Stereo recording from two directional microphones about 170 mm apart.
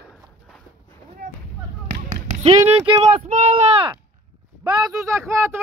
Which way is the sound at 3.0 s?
35° right (ahead or behind).